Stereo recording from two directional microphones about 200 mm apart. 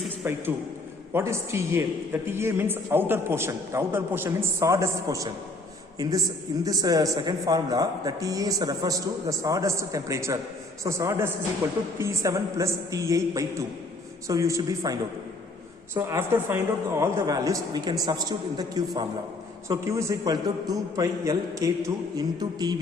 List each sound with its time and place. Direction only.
0.2 s a man's voice: 10° right (ahead or behind)
16.0 s a man's voice: 10° right (ahead or behind)